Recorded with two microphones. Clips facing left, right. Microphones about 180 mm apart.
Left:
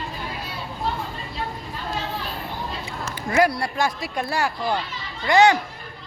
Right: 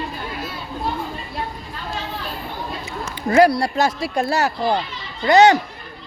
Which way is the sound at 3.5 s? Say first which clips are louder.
Right 5 dB; 75° right (ahead or behind).